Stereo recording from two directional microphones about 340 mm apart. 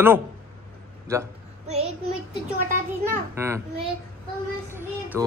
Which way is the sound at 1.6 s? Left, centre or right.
Centre.